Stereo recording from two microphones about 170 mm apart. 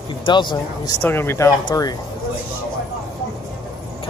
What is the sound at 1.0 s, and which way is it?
Speech, 15° left (ahead or behind).